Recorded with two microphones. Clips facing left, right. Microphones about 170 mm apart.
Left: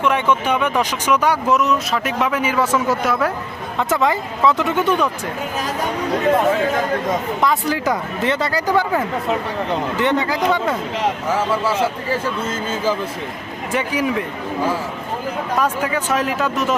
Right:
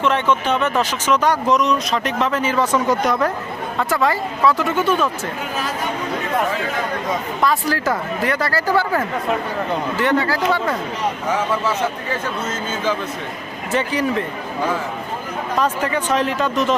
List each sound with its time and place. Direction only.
0.0 s speech: 10° left (ahead or behind)
3.8 s speech: 20° left (ahead or behind)
7.4 s speech: 20° left (ahead or behind)
10.0 s speech: 20° left (ahead or behind)
11.3 s speech: 10° left (ahead or behind)
12.1 s speech: 30° left (ahead or behind)
13.7 s speech: 10° left (ahead or behind)
15.6 s speech: 10° left (ahead or behind)